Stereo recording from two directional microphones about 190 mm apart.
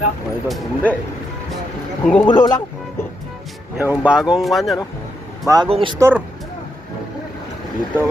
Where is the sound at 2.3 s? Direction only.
20° left (ahead or behind).